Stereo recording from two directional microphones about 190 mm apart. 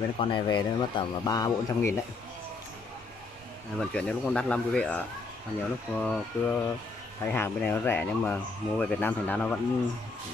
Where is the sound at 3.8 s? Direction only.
5° left (ahead or behind).